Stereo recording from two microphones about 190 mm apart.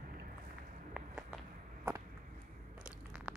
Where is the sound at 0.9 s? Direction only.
5° right (ahead or behind).